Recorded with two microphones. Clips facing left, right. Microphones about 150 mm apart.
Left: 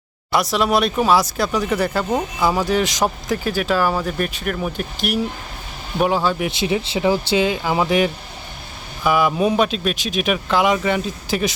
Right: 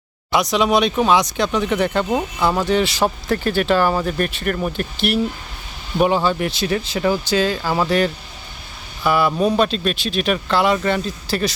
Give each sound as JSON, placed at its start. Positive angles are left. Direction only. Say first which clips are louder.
{"t": 0.3, "sound": "speech", "louder": "right 1 dB", "side_deg": 0}
{"t": 6.0, "sound": "speech", "louder": "right 2 dB", "side_deg": 5}
{"t": 6.6, "sound": "speech", "louder": "left 1 dB", "side_deg": 20}